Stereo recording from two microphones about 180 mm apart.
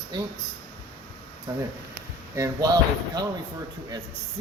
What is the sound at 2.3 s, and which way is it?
Speech, 20° right (ahead or behind).